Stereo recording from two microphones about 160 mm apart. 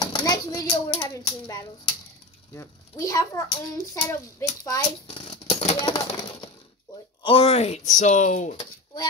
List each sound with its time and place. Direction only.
0.0 s speech: 25° left (ahead or behind)
4.8 s a sound: 35° left (ahead or behind)
5.8 s coin: 25° left (ahead or behind)
7.2 s speech: 40° left (ahead or behind)